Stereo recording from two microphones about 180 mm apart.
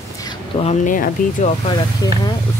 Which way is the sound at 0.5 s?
40° left (ahead or behind).